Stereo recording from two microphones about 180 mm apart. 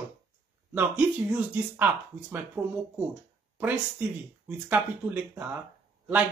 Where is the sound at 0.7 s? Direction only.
10° right (ahead or behind).